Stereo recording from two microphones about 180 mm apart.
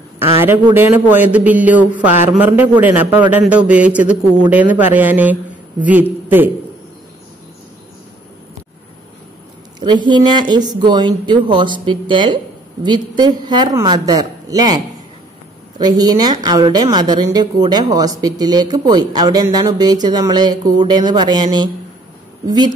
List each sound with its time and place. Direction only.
0.2 s a man's voice: 15° right (ahead or behind)
9.8 s a woman's voice: 25° right (ahead or behind)
15.8 s a woman's voice: 20° right (ahead or behind)